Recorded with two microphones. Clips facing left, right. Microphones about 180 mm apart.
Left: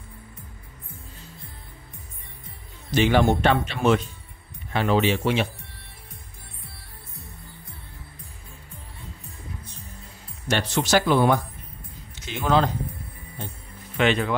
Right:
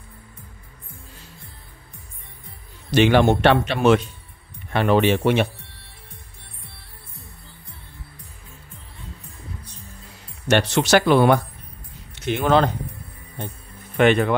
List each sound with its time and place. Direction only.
2.9 s speech: 70° right (ahead or behind)
4.7 s speech: 60° right (ahead or behind)
10.5 s speech: 75° right (ahead or behind)
13.9 s speech: 55° right (ahead or behind)